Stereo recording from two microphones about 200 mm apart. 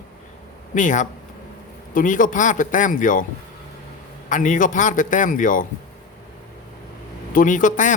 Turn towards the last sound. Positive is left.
turn(degrees=40)  # may be behind; listen again after turning